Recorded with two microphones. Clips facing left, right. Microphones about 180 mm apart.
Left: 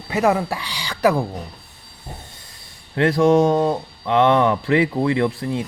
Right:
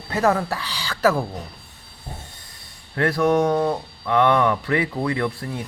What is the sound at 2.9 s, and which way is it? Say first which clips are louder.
Speech: left 4 dB; 25° left (ahead or behind).